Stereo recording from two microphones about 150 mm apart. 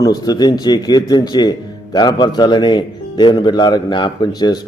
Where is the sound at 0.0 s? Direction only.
25° left (ahead or behind).